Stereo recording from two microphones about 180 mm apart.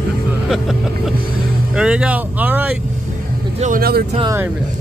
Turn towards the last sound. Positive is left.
turn(degrees=-55)  # may be behind; listen again after turning